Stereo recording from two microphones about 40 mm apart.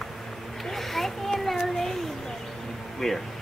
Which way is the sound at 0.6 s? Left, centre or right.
Centre.